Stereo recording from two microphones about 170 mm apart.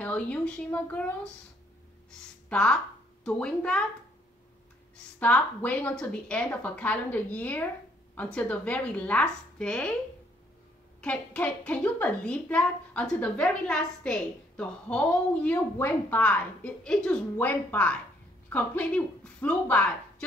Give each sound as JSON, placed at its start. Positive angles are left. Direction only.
{"t": 0.0, "sound": "a woman's voice", "side_deg": 10}
{"t": 2.0, "sound": "a sound", "side_deg": 5}
{"t": 3.3, "sound": "speech", "side_deg": 5}
{"t": 4.9, "sound": "a woman's voice", "side_deg": 10}
{"t": 11.0, "sound": "a woman's voice", "side_deg": 5}